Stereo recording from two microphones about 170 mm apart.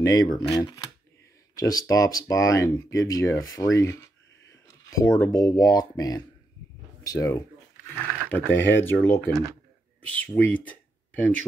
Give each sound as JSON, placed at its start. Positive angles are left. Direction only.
{"t": 0.0, "sound": "speech", "side_deg": 20}